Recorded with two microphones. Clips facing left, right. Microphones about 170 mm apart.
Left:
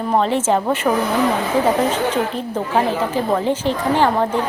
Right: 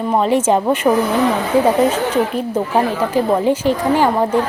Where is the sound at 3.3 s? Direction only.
10° right (ahead or behind).